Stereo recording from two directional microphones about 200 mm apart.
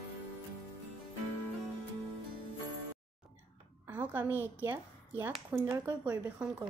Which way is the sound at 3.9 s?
10° right (ahead or behind).